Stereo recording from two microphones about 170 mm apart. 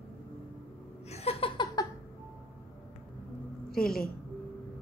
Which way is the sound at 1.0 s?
40° left (ahead or behind).